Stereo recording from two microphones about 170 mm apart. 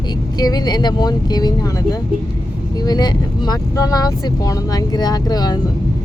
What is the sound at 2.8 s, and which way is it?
Speech, 25° left (ahead or behind).